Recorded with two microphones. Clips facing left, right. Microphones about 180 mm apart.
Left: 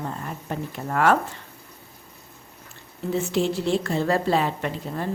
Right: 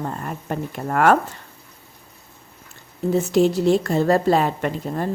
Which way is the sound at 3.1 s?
40° right (ahead or behind).